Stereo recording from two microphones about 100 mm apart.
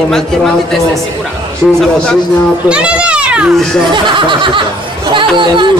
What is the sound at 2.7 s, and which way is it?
Speech, 10° right (ahead or behind).